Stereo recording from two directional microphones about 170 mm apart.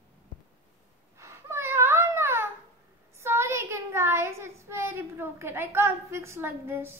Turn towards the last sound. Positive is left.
turn(degrees=-15)  # may be behind; listen again after turning